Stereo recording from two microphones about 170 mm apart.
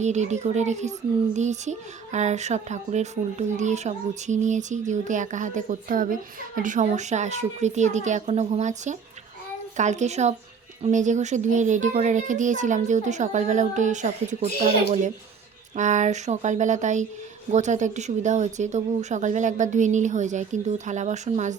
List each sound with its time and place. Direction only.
0.0 s speech: 45° right (ahead or behind)